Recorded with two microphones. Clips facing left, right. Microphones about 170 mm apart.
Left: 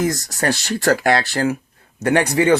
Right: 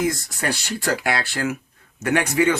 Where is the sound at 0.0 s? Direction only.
40° left (ahead or behind).